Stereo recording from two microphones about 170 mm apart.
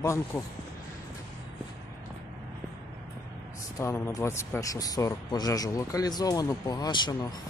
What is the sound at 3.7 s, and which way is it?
Speech, 15° left (ahead or behind).